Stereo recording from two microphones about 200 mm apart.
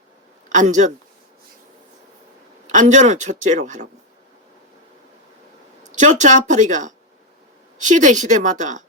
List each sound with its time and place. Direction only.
0.5 s a man's voice: 40° right (ahead or behind)
2.6 s a man's voice: 35° right (ahead or behind)
5.8 s a man's voice: 35° right (ahead or behind)